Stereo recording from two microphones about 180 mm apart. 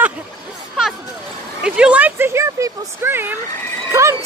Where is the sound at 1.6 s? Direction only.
5° right (ahead or behind).